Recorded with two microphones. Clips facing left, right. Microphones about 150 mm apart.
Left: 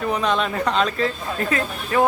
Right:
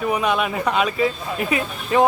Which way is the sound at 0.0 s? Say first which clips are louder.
Right 1 dB; 10° right (ahead or behind).